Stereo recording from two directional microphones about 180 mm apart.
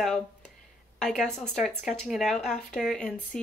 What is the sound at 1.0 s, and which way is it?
A woman's voice, centre (ahead or behind).